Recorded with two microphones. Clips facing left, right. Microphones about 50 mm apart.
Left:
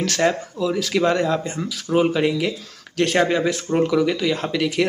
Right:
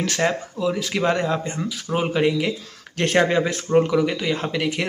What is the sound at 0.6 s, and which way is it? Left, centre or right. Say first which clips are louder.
A man's voice: left 1 dB; right.